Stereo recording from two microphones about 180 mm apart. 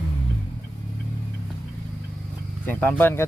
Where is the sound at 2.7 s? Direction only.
10° left (ahead or behind).